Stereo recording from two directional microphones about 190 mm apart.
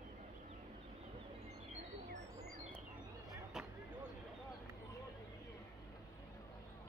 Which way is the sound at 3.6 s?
5° right (ahead or behind).